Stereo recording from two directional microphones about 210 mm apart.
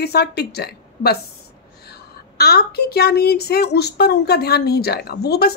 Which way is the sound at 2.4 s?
50° left (ahead or behind).